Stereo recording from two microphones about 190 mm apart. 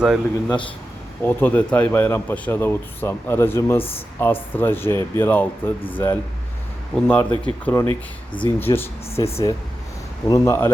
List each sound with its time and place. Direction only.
0.0 s speech: 5° right (ahead or behind)
1.2 s speech: 10° left (ahead or behind)
6.9 s speech: 10° left (ahead or behind)
9.1 s speech: 30° left (ahead or behind)
10.2 s speech: 15° left (ahead or behind)